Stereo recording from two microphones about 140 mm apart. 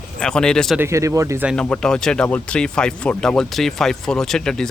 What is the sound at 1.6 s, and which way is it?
Speech, 5° left (ahead or behind).